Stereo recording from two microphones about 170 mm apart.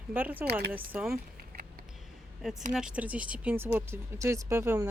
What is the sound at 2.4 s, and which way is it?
Speech, centre (ahead or behind).